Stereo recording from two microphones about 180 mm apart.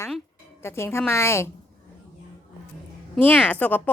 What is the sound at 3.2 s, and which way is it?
Speech, 10° left (ahead or behind).